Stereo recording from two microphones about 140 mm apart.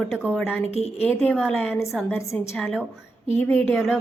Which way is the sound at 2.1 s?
20° left (ahead or behind).